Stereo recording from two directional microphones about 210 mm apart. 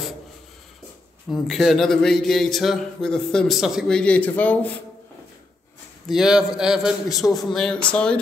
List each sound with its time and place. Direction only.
1.3 s a man's voice: centre (ahead or behind)
6.0 s a man's voice: centre (ahead or behind)